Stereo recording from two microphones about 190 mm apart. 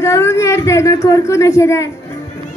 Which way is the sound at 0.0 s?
15° left (ahead or behind).